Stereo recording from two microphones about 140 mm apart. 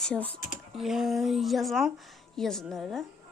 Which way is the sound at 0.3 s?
65° left (ahead or behind).